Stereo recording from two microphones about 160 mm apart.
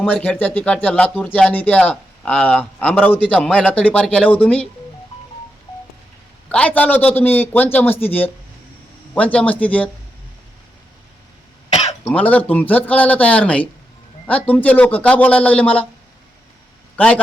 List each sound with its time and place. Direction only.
0.0 s speech: 5° left (ahead or behind)
6.5 s speech: 10° left (ahead or behind)
12.0 s speech: 10° left (ahead or behind)